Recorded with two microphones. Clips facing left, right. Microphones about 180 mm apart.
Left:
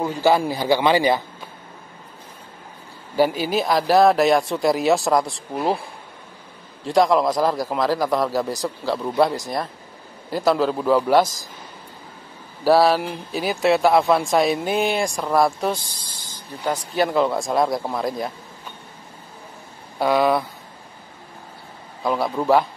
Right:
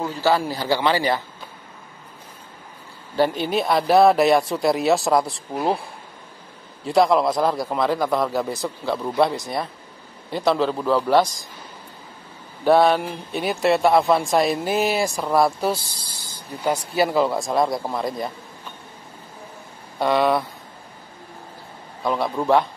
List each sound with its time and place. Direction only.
0.0 s a man's voice: 15° left (ahead or behind)
3.2 s speech: 5° left (ahead or behind)
12.6 s speech: centre (ahead or behind)
20.0 s speech: centre (ahead or behind)
22.0 s speech: centre (ahead or behind)